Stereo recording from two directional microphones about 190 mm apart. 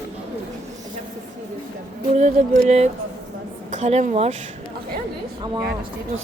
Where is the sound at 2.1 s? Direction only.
40° right (ahead or behind).